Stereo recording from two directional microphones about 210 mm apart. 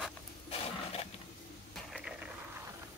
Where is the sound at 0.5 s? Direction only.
30° left (ahead or behind).